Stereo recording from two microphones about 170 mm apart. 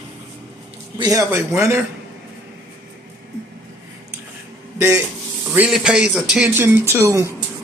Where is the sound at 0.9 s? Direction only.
20° right (ahead or behind).